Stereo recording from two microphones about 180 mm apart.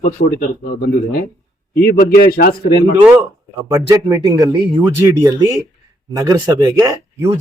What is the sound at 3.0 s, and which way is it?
Speech, 5° right (ahead or behind).